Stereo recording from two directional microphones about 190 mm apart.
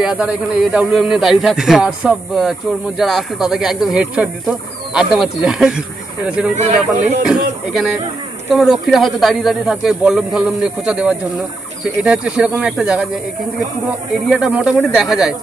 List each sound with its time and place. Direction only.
0.0 s speech: 5° right (ahead or behind)
6.5 s speech: 35° right (ahead or behind)
8.5 s speech: centre (ahead or behind)